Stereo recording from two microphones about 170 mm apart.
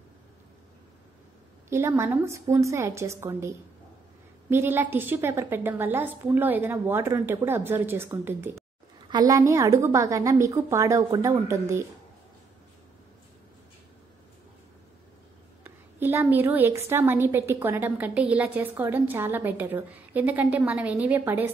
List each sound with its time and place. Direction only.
1.7 s a woman's voice: 15° right (ahead or behind)
15.6 s a woman's voice: 10° right (ahead or behind)